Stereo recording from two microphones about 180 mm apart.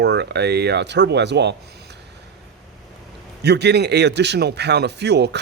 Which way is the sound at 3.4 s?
70° right (ahead or behind).